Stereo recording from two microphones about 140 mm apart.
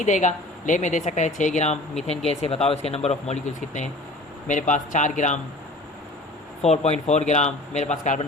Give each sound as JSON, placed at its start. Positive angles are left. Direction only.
{"t": 0.0, "sound": "speech", "side_deg": 60}
{"t": 6.6, "sound": "speech", "side_deg": 50}